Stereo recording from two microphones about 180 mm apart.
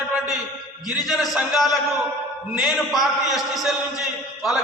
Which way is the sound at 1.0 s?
Centre (ahead or behind).